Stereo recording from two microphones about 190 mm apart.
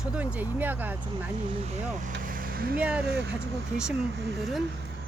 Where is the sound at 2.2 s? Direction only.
45° right (ahead or behind).